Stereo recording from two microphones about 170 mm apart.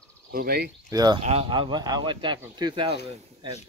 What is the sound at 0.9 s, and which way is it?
Speech, 25° right (ahead or behind).